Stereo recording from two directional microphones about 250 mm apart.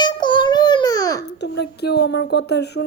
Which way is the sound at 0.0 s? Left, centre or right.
Centre.